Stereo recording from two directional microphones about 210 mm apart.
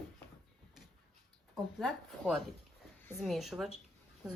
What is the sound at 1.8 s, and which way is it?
Speech, centre (ahead or behind).